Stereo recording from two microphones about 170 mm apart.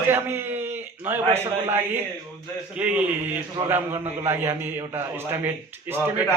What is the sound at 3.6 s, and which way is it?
A man's voice, 20° right (ahead or behind).